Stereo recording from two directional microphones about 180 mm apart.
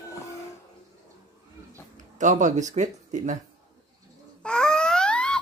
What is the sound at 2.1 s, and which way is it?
Speech, 45° right (ahead or behind).